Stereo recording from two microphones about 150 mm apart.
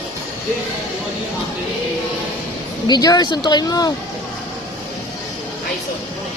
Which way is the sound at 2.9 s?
25° left (ahead or behind).